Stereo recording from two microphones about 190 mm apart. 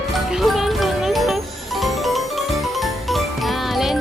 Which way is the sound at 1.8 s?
Centre (ahead or behind).